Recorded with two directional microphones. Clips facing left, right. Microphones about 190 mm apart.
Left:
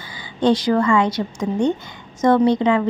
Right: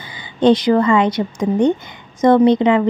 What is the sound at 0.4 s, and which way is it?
A woman's voice, 20° right (ahead or behind).